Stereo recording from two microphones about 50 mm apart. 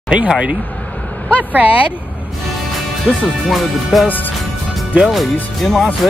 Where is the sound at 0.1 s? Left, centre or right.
Right.